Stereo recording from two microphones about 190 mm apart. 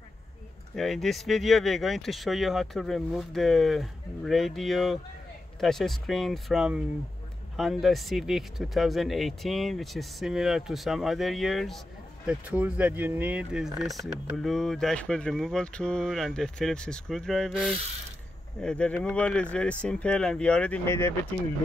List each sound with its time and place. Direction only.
0.7 s speech: centre (ahead or behind)